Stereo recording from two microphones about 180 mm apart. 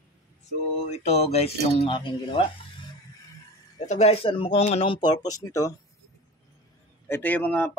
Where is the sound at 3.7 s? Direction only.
40° left (ahead or behind); by 5.7 s 15° left (ahead or behind).